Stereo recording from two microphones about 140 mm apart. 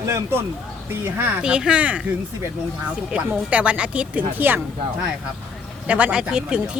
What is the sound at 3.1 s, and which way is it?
A woman's voice, 10° right (ahead or behind).